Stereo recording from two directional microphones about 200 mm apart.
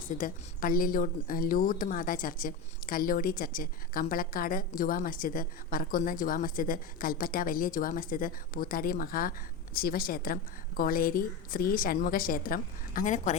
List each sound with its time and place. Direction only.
0.2 s a woman's voice: 45° left (ahead or behind)